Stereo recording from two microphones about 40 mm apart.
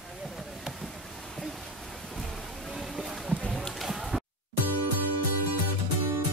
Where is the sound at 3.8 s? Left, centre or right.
Centre.